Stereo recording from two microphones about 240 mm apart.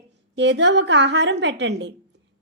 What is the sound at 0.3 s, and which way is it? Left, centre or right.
A woman's voice, right.